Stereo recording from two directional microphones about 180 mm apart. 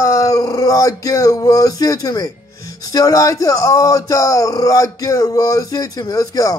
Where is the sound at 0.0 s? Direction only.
15° left (ahead or behind).